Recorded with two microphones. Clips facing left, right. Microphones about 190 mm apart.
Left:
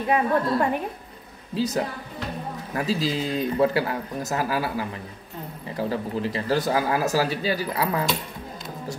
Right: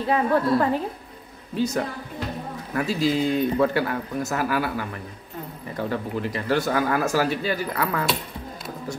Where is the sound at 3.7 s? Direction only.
15° left (ahead or behind).